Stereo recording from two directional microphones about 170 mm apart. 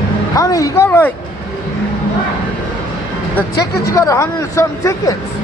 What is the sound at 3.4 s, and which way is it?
Speech, 20° left (ahead or behind).